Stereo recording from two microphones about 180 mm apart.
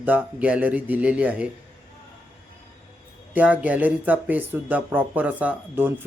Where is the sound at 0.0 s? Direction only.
10° right (ahead or behind).